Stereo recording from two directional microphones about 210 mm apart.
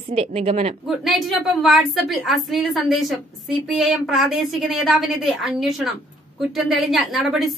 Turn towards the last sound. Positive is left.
turn(degrees=0)  # may be behind; listen again after turning